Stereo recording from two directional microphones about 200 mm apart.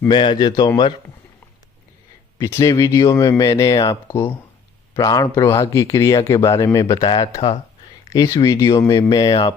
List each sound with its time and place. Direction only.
0.1 s speech: 20° left (ahead or behind)
2.4 s speech: 15° left (ahead or behind)